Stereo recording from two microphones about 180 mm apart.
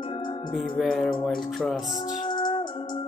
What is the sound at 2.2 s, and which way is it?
Music, 25° left (ahead or behind).